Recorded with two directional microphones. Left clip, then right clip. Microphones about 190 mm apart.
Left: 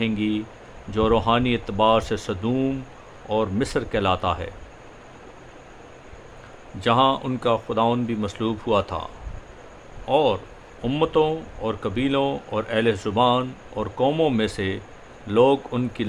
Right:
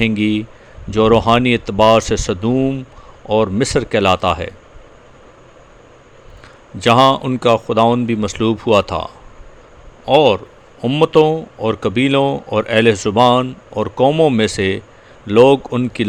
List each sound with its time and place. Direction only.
0.0 s speech: 35° right (ahead or behind)
6.7 s speech: 35° right (ahead or behind)